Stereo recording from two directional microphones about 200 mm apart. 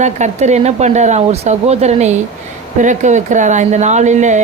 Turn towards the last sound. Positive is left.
turn(degrees=-35)  # may be behind; listen again after turning